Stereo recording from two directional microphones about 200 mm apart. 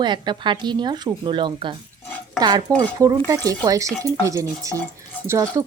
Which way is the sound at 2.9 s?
15° right (ahead or behind).